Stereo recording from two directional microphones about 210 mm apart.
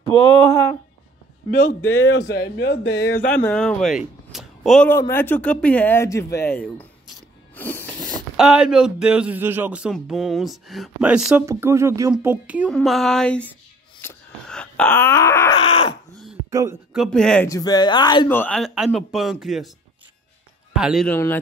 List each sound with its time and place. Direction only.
0.2 s speech: 25° right (ahead or behind)
1.5 s a man's voice: 40° left (ahead or behind)
2.3 s speech: 55° left (ahead or behind)
3.4 s speech: 5° left (ahead or behind)
12.6 s speech: 5° left (ahead or behind)
14.0 s wail: 5° left (ahead or behind)
15.6 s speech: 25° left (ahead or behind)
16.4 s a sound: 15° right (ahead or behind)
16.9 s speech: centre (ahead or behind)
17.5 s speech: 15° left (ahead or behind)
18.3 s speech: 5° left (ahead or behind)
20.7 s speech: centre (ahead or behind)